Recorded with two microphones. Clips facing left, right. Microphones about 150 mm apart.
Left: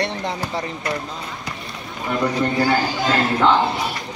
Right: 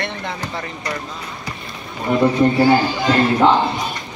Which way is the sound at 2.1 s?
20° right (ahead or behind).